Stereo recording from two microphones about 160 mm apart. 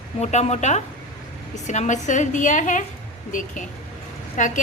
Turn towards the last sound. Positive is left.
turn(degrees=50)  # may be behind; listen again after turning